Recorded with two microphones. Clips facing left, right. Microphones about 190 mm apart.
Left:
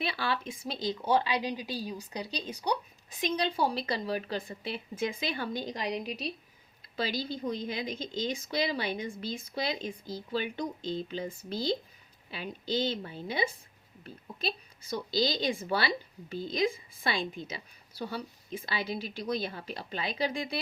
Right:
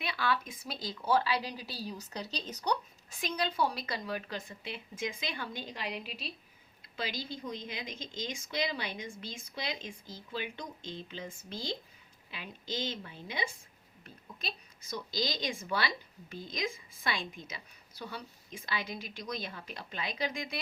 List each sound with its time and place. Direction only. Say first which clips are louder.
0.0 s a woman's voice: left 1 dB; 30° left (ahead or behind); by 3.2 s 10° left (ahead or behind)
3.2 s a woman's voice: left 3 dB; 25° left (ahead or behind)